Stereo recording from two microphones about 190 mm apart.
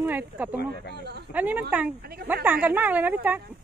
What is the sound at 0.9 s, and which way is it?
Speech, 60° right (ahead or behind).